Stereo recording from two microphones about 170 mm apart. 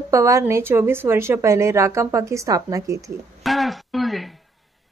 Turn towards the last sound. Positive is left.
turn(degrees=0)  # may be behind; listen again after turning